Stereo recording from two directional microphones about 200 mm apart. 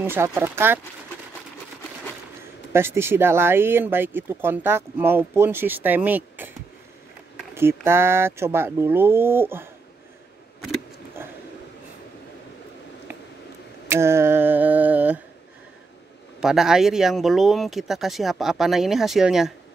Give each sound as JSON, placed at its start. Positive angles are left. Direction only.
{"t": 0.0, "sound": "speech", "side_deg": -15}
{"t": 2.7, "sound": "speech", "side_deg": -10}
{"t": 13.8, "sound": "a sound", "side_deg": -15}
{"t": 16.3, "sound": "speech", "side_deg": -5}